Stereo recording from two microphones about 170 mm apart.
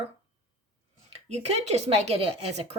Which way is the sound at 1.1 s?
40° right (ahead or behind).